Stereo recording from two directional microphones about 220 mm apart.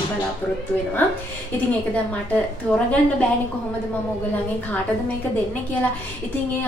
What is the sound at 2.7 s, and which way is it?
Speech, 5° left (ahead or behind).